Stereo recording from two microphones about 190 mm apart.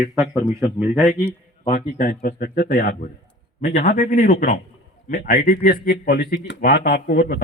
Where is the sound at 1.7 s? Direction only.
45° left (ahead or behind).